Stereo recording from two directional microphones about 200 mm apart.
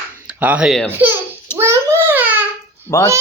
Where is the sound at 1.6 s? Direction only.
15° right (ahead or behind).